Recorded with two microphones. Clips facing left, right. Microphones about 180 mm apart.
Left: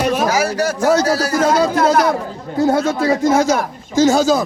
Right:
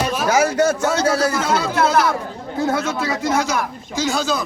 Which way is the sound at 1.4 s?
40° left (ahead or behind).